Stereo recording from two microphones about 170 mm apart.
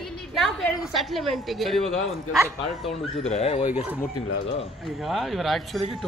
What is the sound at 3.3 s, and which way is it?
Speech, 40° left (ahead or behind).